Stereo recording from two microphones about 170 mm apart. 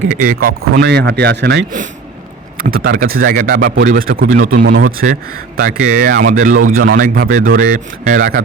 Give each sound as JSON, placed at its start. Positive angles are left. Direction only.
{"t": 0.1, "sound": "speech", "side_deg": -55}
{"t": 2.6, "sound": "speech", "side_deg": -60}
{"t": 4.6, "sound": "speech", "side_deg": -70}
{"t": 5.5, "sound": "speech", "side_deg": -55}